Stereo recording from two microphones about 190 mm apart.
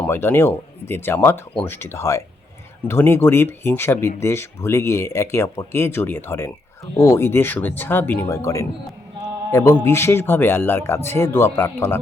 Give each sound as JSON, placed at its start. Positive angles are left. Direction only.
{"t": 0.0, "sound": "a man's voice", "side_deg": 10}